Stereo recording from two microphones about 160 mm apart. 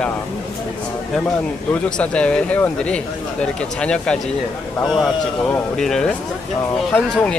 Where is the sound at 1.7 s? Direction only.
5° left (ahead or behind).